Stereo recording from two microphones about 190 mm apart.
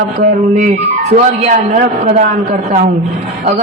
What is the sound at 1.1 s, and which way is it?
A man's voice, 40° right (ahead or behind).